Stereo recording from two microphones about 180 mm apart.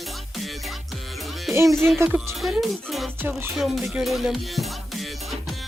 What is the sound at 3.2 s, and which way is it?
Speech, 10° right (ahead or behind).